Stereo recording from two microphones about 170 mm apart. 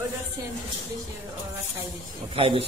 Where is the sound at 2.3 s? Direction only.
35° right (ahead or behind).